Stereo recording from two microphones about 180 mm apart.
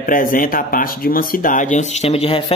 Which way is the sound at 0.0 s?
50° left (ahead or behind).